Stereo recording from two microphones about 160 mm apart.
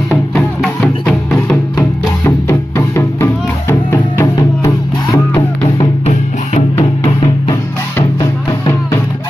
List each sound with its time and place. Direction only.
0.1 s music: 5° left (ahead or behind); by 5.2 s 25° left (ahead or behind)
6.0 s music: 40° left (ahead or behind)
8.0 s music: 20° left (ahead or behind)